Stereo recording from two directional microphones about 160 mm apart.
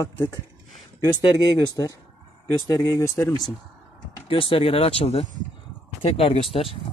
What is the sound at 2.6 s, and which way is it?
Speech, 20° left (ahead or behind).